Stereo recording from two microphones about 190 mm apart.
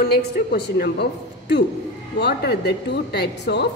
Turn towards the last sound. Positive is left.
turn(degrees=60)  # may be behind; listen again after turning